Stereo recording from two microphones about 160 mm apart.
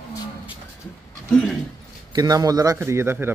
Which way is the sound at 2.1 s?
25° right (ahead or behind).